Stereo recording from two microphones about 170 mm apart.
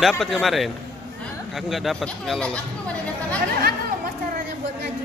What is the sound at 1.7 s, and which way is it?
Speech, centre (ahead or behind).